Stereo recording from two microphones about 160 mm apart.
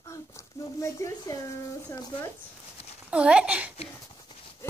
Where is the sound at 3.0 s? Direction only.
5° right (ahead or behind).